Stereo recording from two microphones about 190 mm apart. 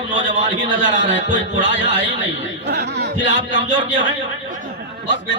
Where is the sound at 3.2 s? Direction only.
70° left (ahead or behind).